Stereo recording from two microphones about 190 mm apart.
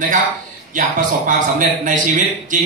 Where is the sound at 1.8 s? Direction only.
40° right (ahead or behind).